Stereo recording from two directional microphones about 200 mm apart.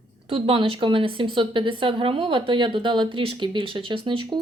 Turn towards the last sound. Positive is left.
turn(degrees=-25)  # may be behind; listen again after turning